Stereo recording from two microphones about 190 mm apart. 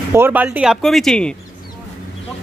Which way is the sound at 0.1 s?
10° right (ahead or behind).